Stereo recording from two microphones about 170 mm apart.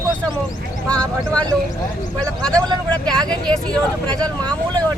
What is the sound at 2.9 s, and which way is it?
Speech, 5° left (ahead or behind).